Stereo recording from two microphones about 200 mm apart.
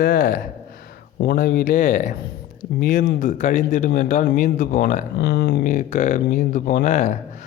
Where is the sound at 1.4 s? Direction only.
45° left (ahead or behind).